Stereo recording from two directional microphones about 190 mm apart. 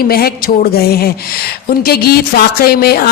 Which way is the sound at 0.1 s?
50° left (ahead or behind).